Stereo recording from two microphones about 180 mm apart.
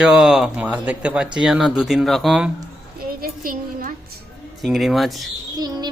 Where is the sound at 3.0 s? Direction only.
50° right (ahead or behind).